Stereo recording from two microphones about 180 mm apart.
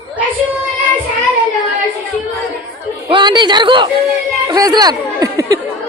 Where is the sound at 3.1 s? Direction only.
25° right (ahead or behind).